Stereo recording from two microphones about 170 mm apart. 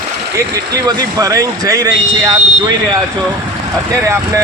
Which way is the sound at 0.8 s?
20° right (ahead or behind).